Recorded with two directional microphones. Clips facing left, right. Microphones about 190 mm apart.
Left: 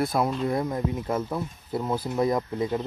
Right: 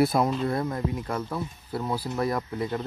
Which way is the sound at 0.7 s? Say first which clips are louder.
Left 2 dB; 20° left (ahead or behind).